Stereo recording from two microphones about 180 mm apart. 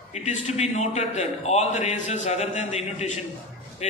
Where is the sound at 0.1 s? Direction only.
40° left (ahead or behind).